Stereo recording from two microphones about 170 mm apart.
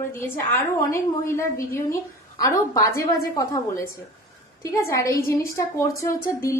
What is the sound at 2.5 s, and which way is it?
A woman's voice, 20° left (ahead or behind).